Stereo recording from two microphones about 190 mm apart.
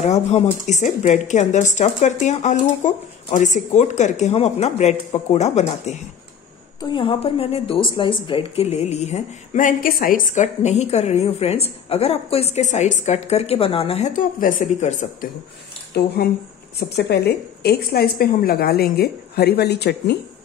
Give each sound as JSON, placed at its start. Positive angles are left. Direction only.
{"t": 0.0, "sound": "a woman's voice", "side_deg": 35}
{"t": 6.8, "sound": "a woman's voice", "side_deg": 25}
{"t": 16.0, "sound": "a woman's voice", "side_deg": 60}